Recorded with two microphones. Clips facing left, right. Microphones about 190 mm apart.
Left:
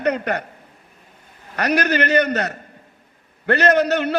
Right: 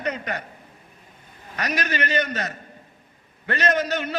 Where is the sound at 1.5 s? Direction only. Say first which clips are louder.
Left 8 dB; 65° left (ahead or behind).